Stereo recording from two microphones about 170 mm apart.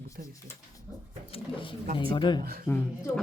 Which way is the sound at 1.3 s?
30° left (ahead or behind).